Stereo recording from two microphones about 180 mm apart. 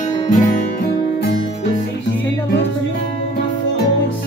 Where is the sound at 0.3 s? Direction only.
45° left (ahead or behind).